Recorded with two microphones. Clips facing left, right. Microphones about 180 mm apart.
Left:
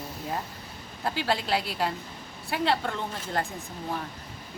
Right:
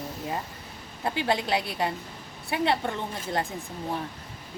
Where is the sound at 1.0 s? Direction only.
20° right (ahead or behind).